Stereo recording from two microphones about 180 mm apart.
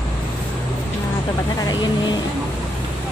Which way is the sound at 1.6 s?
25° left (ahead or behind).